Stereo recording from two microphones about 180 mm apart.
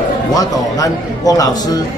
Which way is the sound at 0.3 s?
20° left (ahead or behind).